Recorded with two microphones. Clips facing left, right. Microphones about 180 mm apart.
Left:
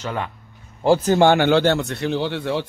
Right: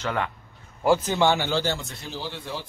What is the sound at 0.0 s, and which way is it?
Speech, 15° left (ahead or behind).